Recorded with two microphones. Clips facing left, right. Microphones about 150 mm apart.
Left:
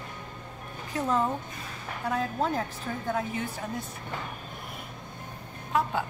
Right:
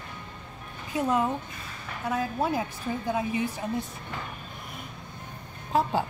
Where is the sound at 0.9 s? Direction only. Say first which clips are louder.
Right 2 dB; 10° right (ahead or behind).